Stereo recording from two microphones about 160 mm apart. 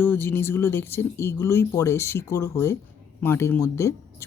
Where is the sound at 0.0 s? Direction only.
15° left (ahead or behind).